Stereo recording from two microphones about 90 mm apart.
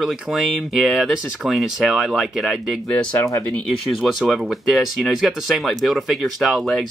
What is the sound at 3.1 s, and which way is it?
Speech, 35° left (ahead or behind).